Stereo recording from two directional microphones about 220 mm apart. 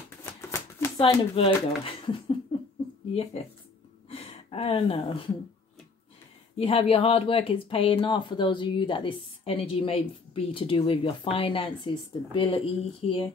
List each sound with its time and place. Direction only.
0.2 s shuffling cards: 10° left (ahead or behind)
0.9 s speech: 25° left (ahead or behind)
4.1 s speech: 25° left (ahead or behind)
6.5 s speech: 25° left (ahead or behind)